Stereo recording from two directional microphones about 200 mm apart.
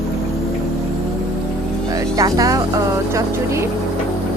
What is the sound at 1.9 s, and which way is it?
Speech, 15° right (ahead or behind).